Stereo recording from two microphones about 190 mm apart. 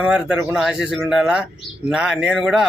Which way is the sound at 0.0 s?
5° right (ahead or behind).